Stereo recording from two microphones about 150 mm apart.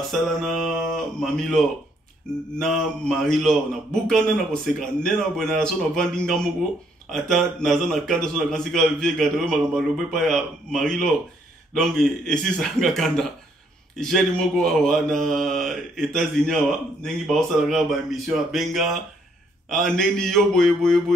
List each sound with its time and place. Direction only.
0.1 s a man's voice: centre (ahead or behind)